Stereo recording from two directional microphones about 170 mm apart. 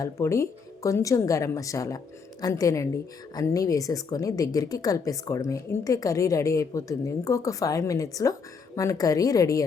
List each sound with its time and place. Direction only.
0.0 s a woman's voice: 20° left (ahead or behind)